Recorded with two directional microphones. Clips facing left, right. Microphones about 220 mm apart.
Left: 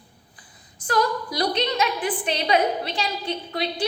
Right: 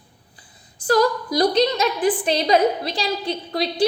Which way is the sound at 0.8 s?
40° right (ahead or behind).